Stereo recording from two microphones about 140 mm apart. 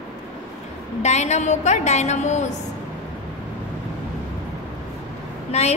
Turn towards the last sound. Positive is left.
turn(degrees=50)  # may be behind; listen again after turning